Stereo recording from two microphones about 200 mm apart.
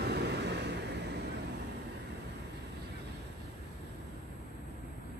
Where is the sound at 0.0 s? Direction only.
55° right (ahead or behind).